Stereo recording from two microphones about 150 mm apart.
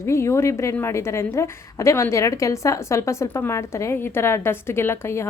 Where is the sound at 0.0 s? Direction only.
20° left (ahead or behind).